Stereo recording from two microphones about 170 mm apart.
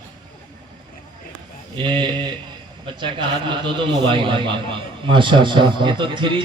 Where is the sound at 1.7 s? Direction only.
30° right (ahead or behind).